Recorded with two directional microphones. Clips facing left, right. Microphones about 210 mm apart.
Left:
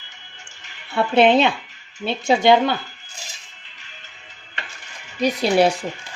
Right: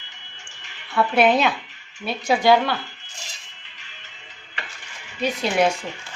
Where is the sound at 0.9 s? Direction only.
25° left (ahead or behind).